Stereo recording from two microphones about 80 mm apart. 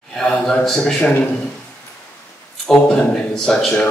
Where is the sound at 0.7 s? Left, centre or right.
Centre.